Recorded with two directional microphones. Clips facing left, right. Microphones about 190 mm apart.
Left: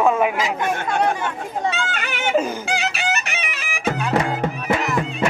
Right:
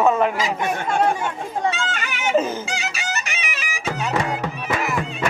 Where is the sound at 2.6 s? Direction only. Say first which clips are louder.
Left 5 dB; 60° left (ahead or behind).